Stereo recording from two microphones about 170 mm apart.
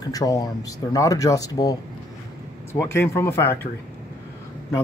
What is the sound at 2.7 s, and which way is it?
Speech, 15° left (ahead or behind).